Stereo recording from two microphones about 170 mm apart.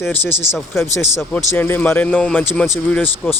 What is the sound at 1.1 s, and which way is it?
Speech, 15° left (ahead or behind).